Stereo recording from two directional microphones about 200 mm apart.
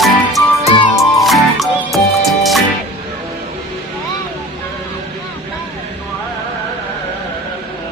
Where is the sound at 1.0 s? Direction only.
Centre (ahead or behind).